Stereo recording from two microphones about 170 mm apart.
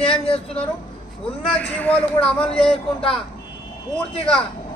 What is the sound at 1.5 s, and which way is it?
Speech, 10° left (ahead or behind).